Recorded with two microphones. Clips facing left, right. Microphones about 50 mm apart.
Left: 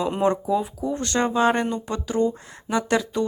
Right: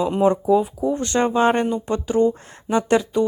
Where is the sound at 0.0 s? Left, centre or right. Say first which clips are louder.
Right 4 dB; centre.